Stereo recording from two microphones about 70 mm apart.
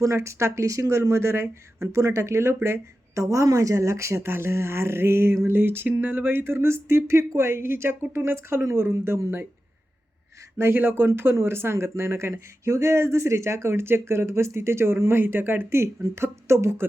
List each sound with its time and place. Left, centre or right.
0.0 s speech: right
3.2 s speech: right
10.6 s speech: right